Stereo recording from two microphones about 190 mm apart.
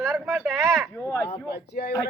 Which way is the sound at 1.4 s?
55° left (ahead or behind).